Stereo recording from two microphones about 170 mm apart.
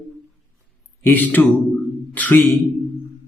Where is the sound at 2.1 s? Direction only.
10° left (ahead or behind).